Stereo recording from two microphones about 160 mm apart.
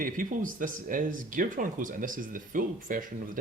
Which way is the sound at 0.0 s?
60° right (ahead or behind).